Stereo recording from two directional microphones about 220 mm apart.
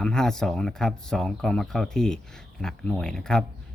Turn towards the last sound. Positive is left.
turn(degrees=0)  # may be behind; listen again after turning